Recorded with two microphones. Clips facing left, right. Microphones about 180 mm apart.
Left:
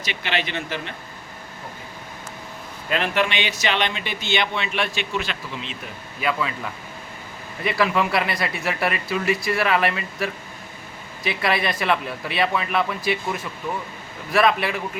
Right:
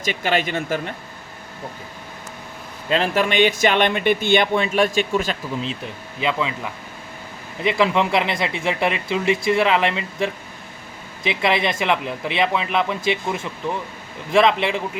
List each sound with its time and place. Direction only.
0.0 s speech: 45° right (ahead or behind)
2.9 s speech: 35° right (ahead or behind)
3.2 s speech: 50° right (ahead or behind)
6.1 s speech: 20° right (ahead or behind)
7.6 s speech: 20° right (ahead or behind)